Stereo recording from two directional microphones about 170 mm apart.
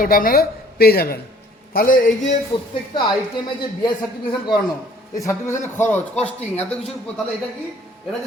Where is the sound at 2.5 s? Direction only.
35° left (ahead or behind).